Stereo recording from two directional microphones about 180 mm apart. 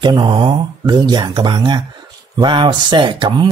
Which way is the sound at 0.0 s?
25° right (ahead or behind).